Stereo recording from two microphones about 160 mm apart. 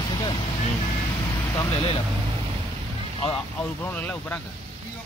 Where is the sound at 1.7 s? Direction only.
35° left (ahead or behind).